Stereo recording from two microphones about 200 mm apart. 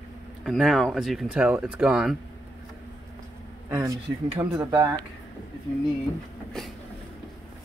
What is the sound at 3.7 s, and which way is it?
Speech, 15° right (ahead or behind).